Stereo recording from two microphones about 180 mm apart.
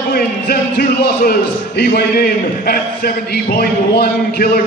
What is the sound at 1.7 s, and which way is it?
A man's voice, 60° left (ahead or behind).